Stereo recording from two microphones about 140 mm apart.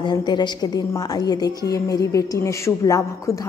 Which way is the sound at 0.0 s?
30° left (ahead or behind).